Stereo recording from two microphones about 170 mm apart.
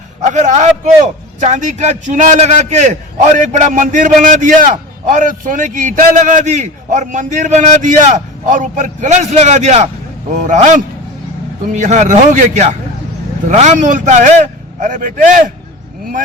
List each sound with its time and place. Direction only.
0.2 s a man's voice: 45° right (ahead or behind)